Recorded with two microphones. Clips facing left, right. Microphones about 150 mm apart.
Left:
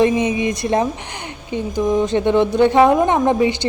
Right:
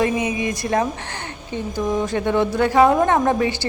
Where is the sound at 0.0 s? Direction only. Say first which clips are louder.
Left 5 dB; 25° left (ahead or behind).